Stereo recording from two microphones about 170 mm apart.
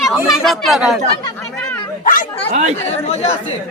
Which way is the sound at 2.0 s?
55° left (ahead or behind).